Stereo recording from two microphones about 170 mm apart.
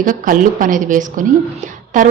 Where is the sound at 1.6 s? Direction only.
50° right (ahead or behind).